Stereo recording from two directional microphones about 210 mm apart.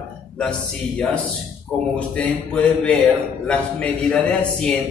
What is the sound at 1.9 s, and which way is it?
A man's voice, 5° left (ahead or behind).